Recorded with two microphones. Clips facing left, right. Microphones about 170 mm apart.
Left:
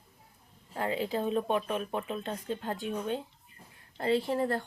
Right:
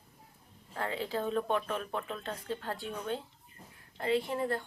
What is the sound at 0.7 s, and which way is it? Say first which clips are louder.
Speech: left 4 dB; 15° left (ahead or behind).